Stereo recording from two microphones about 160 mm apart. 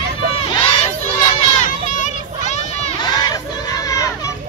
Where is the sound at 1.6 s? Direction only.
50° left (ahead or behind).